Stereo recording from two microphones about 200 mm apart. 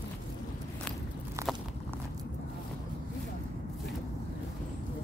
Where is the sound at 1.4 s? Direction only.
15° right (ahead or behind).